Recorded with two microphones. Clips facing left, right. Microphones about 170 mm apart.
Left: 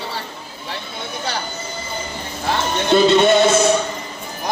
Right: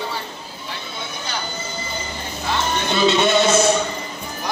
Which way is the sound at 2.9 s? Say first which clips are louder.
Left 6 dB; 50° left (ahead or behind).